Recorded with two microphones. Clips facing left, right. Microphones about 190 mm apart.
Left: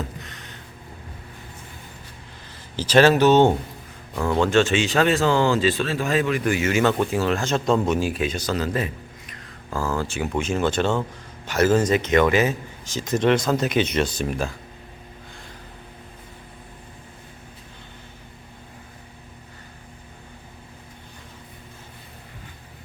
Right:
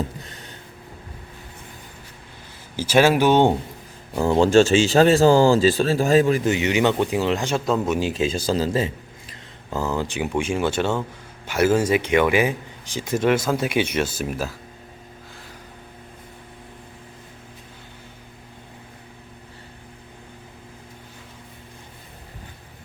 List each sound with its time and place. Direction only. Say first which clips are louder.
0.2 s a sound: right 1 dB; 30° right (ahead or behind)
2.7 s a man's voice: left 1 dB; 10° right (ahead or behind)
4.1 s speech: right 4 dB; 30° right (ahead or behind)
6.4 s a man's voice: right 1 dB; 20° right (ahead or behind)
7.6 s a man's voice: left 1 dB; 5° right (ahead or behind)
7.9 s a man's voice: right 2 dB; 20° right (ahead or behind); by 14.5 s 5° right (ahead or behind)